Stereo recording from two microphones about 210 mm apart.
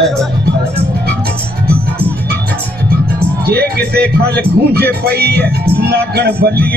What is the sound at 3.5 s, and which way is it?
Speech, 50° right (ahead or behind).